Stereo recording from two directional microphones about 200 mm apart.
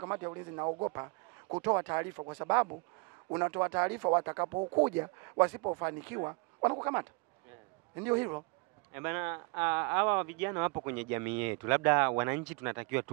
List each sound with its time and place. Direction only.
0.0 s a man's voice: 20° right (ahead or behind)
2.1 s speech: 25° right (ahead or behind)
3.3 s speech: 15° right (ahead or behind)
4.5 s speech: 30° right (ahead or behind)
4.8 s speech: 10° right (ahead or behind)